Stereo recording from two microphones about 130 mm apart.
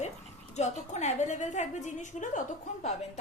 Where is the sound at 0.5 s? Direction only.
60° left (ahead or behind).